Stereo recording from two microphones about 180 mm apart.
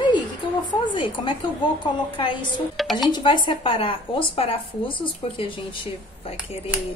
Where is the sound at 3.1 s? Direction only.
25° left (ahead or behind).